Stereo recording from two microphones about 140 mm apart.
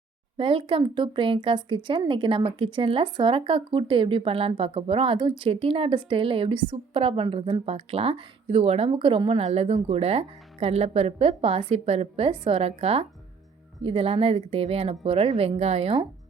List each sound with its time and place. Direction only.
0.3 s speech: 40° right (ahead or behind)